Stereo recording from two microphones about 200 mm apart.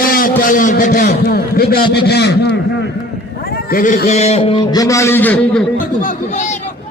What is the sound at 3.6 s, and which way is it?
A man's voice, 45° left (ahead or behind).